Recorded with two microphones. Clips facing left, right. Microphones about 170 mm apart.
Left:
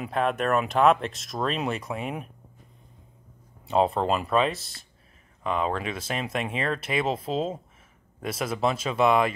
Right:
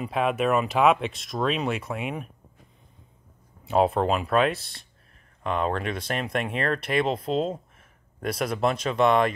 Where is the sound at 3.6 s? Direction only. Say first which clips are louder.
Right 1 dB; centre (ahead or behind).